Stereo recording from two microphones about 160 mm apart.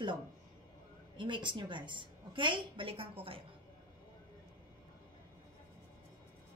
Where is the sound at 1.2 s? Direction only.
30° right (ahead or behind).